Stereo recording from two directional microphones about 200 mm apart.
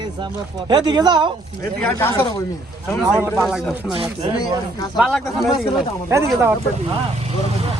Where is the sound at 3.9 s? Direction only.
25° right (ahead or behind).